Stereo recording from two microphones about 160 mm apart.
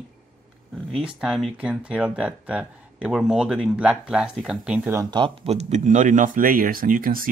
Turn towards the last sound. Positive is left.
turn(degrees=-60)  # may be behind; listen again after turning